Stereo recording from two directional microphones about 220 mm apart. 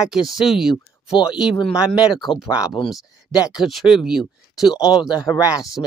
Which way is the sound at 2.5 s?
20° left (ahead or behind).